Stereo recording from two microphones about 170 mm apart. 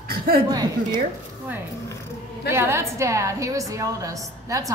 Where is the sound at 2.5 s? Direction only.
15° right (ahead or behind).